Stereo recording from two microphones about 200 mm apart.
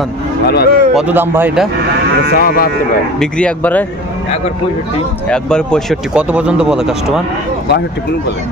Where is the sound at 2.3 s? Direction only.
50° left (ahead or behind).